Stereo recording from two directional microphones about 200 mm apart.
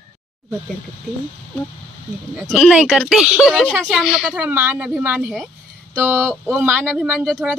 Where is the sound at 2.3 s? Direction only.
Centre (ahead or behind).